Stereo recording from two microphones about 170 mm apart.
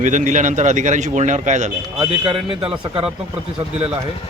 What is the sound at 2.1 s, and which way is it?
Speech, 30° right (ahead or behind).